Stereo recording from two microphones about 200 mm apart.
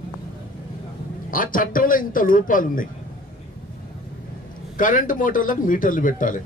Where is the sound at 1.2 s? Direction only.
45° left (ahead or behind).